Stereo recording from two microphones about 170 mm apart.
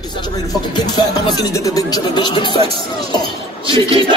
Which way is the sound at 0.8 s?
25° left (ahead or behind).